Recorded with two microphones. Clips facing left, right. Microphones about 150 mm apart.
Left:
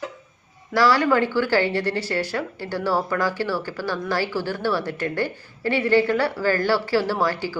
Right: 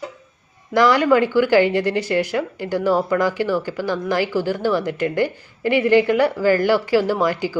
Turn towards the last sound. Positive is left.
turn(degrees=-15)  # may be behind; listen again after turning